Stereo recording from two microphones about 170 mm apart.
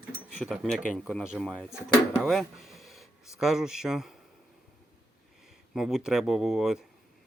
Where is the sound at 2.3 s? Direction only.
Centre (ahead or behind).